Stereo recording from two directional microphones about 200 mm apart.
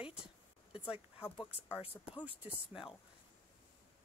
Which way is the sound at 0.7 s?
25° left (ahead or behind).